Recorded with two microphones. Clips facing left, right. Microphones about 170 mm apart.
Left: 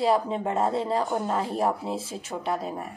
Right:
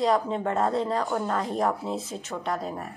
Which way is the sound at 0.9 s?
25° left (ahead or behind).